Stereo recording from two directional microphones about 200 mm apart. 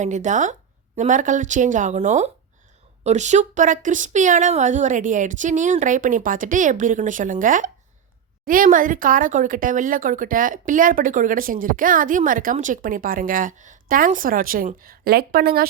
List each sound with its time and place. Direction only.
0.0 s speech: 35° right (ahead or behind)